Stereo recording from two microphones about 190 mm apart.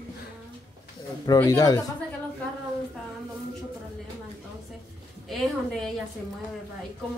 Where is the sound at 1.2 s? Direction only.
20° left (ahead or behind).